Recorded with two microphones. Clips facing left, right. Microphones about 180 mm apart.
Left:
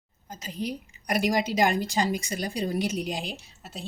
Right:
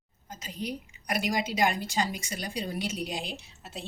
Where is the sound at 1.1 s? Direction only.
40° left (ahead or behind).